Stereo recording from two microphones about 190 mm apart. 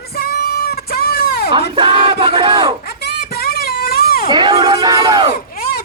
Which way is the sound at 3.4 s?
55° left (ahead or behind).